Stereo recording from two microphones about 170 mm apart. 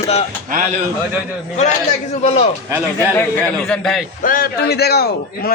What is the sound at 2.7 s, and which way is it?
Speech, 10° right (ahead or behind).